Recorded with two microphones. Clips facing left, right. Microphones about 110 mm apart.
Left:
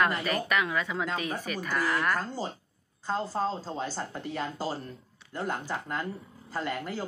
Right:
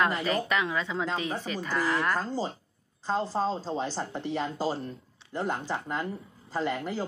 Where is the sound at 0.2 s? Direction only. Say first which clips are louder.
Right 1 dB; 25° right (ahead or behind).